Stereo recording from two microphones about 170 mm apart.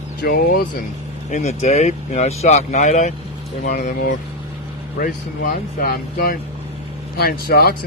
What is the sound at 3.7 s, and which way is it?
Speech, 60° left (ahead or behind).